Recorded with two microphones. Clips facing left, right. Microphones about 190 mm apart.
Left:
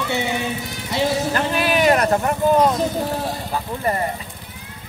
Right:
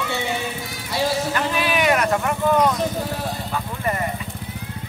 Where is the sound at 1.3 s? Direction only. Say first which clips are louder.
Left 2 dB; 40° left (ahead or behind).